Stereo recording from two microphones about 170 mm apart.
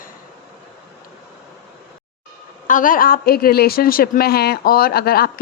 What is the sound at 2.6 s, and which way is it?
A woman's voice, 50° left (ahead or behind).